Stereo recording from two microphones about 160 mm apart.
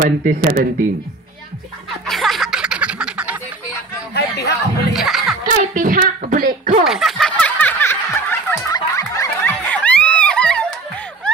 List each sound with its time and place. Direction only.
0.0 s speech: 60° right (ahead or behind)
2.0 s snicker: centre (ahead or behind)
4.1 s a sound: 90° left
4.9 s music: centre (ahead or behind)
5.6 s speech: 55° right (ahead or behind)
6.8 s snicker: centre (ahead or behind)